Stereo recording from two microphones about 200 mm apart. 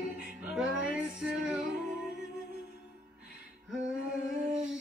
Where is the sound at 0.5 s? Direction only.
5° right (ahead or behind).